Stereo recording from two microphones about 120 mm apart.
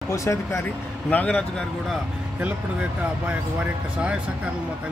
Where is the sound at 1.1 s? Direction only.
10° left (ahead or behind).